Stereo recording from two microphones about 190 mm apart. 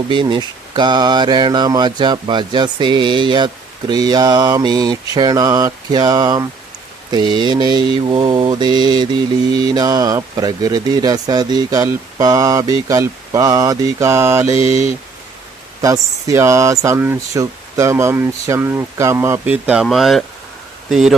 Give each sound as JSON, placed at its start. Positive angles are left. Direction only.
{"t": 0.1, "sound": "mantra", "side_deg": -25}
{"t": 15.8, "sound": "speech", "side_deg": -15}